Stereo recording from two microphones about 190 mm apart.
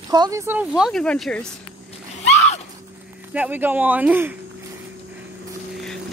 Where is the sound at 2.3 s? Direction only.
35° left (ahead or behind).